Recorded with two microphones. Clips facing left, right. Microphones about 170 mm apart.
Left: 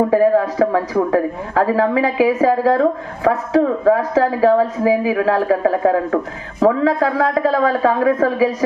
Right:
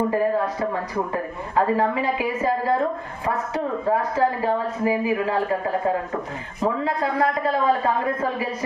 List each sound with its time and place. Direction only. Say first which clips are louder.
0.1 s a woman's voice: left 8 dB; 90° left